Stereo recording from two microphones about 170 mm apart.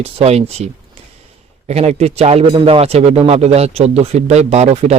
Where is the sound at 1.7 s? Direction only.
40° right (ahead or behind).